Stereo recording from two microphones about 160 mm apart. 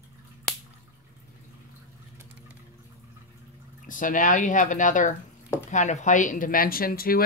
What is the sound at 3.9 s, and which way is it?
Speech, 55° left (ahead or behind).